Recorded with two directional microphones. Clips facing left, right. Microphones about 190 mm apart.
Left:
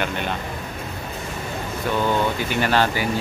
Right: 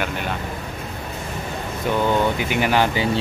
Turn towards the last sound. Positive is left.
turn(degrees=-20)  # may be behind; listen again after turning